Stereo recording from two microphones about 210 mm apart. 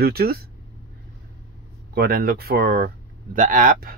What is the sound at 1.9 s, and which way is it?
Speech, 45° right (ahead or behind).